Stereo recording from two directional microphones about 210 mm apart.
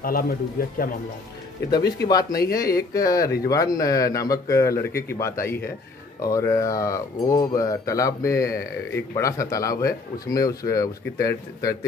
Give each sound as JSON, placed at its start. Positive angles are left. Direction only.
{"t": 0.0, "sound": "speech", "side_deg": 45}
{"t": 2.0, "sound": "speech", "side_deg": 20}